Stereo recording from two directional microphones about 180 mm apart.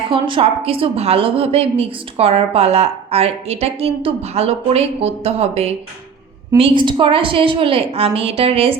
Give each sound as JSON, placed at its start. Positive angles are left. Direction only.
{"t": 0.1, "sound": "a woman's voice", "side_deg": -30}